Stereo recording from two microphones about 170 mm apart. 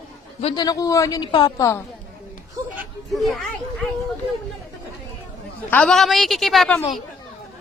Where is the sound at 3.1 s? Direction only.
Centre (ahead or behind).